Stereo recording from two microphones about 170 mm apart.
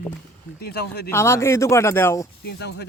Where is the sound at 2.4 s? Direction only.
80° left.